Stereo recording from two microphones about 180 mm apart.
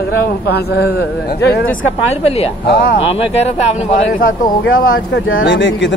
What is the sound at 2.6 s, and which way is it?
Speech, 55° left (ahead or behind).